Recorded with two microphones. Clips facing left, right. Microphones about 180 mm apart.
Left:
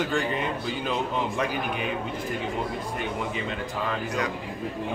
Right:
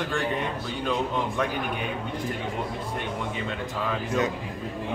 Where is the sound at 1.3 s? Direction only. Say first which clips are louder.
Even; centre (ahead or behind).